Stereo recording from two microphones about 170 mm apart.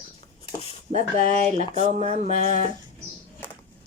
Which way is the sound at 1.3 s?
40° right (ahead or behind).